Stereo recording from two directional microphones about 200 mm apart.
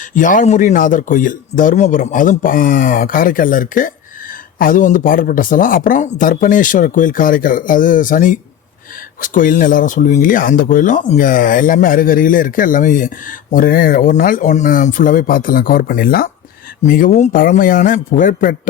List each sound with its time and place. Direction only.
0.1 s speech: 40° left (ahead or behind)